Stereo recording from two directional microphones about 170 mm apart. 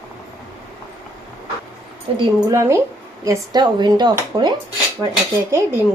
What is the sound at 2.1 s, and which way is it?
Speech, 30° right (ahead or behind).